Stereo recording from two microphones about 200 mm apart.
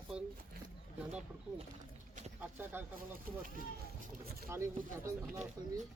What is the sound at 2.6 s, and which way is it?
Speech, 10° right (ahead or behind).